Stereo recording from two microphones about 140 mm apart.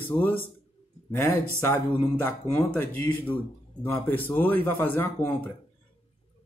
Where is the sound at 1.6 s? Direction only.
15° left (ahead or behind).